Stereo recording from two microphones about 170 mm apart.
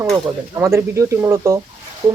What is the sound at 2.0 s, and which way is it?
Speech, 30° right (ahead or behind).